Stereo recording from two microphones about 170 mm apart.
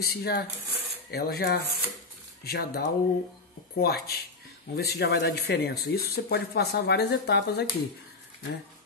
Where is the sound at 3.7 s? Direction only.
70° left (ahead or behind).